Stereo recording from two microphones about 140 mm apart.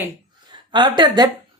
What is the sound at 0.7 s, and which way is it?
Speech, 35° right (ahead or behind).